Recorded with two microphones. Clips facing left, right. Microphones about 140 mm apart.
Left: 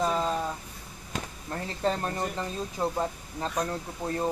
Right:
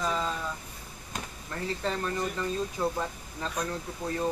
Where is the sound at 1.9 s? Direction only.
35° left (ahead or behind).